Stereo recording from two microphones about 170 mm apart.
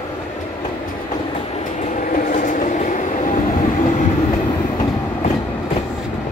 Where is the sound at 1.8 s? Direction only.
50° left (ahead or behind).